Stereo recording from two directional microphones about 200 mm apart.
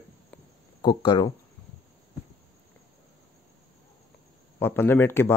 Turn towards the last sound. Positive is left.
turn(degrees=10)  # may be behind; listen again after turning